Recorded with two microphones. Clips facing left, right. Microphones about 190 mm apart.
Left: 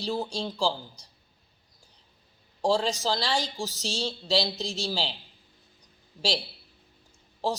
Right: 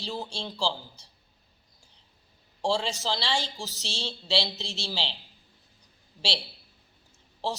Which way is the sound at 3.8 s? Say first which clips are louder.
Left 5 dB; 45° left (ahead or behind).